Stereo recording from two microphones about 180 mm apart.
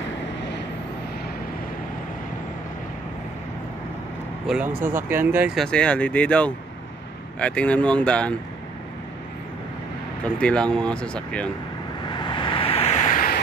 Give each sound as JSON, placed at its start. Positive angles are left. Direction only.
{"t": 4.5, "sound": "speech", "side_deg": -10}
{"t": 5.6, "sound": "speech", "side_deg": 5}
{"t": 10.2, "sound": "speech", "side_deg": 5}
{"t": 12.1, "sound": "vehicle", "side_deg": 25}